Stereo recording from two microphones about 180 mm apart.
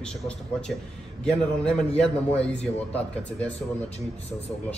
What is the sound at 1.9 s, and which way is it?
Speech, 35° left (ahead or behind).